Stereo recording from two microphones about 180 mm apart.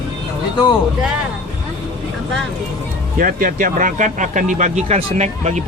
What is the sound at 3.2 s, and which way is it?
Speech, 50° right (ahead or behind).